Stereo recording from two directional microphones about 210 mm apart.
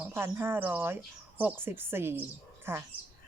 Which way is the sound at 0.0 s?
10° right (ahead or behind).